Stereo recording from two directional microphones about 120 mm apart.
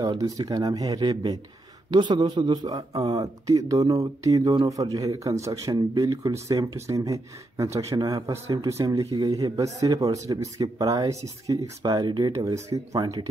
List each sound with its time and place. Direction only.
0.2 s a man's voice: 30° right (ahead or behind)